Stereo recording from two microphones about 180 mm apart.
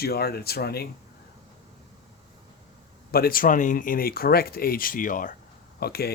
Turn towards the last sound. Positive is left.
turn(degrees=60)  # may be behind; listen again after turning